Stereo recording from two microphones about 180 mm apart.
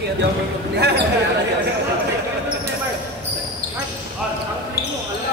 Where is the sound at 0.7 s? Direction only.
65° right (ahead or behind).